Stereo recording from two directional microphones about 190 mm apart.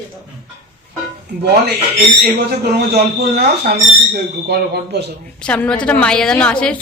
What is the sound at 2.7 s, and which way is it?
Speech, 55° right (ahead or behind).